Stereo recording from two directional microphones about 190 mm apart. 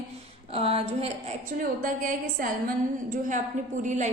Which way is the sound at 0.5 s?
30° right (ahead or behind).